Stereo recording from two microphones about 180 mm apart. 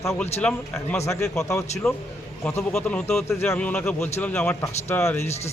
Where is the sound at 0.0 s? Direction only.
15° left (ahead or behind).